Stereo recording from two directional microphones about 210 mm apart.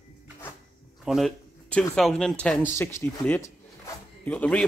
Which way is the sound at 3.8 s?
5° left (ahead or behind).